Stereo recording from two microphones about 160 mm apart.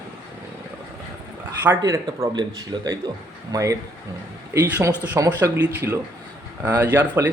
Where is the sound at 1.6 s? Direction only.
15° right (ahead or behind).